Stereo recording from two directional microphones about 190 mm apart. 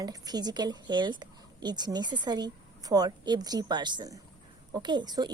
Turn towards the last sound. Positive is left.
turn(degrees=-20)  # may be behind; listen again after turning